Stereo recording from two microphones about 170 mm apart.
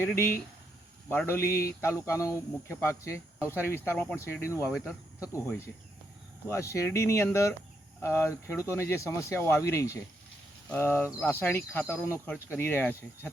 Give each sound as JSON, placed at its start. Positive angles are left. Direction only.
{"t": 0.0, "sound": "speech", "side_deg": 15}
{"t": 4.7, "sound": "speech", "side_deg": 0}
{"t": 5.3, "sound": "speech", "side_deg": 15}